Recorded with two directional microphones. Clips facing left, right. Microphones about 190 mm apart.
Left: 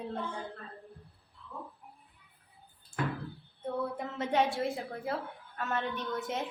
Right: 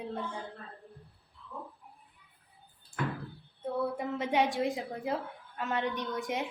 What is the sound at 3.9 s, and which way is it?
A woman's voice, 10° right (ahead or behind).